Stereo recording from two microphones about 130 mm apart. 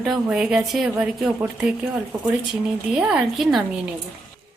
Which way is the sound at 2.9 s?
5° right (ahead or behind).